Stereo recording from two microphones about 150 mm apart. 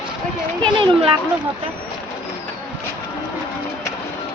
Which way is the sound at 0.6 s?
35° right (ahead or behind).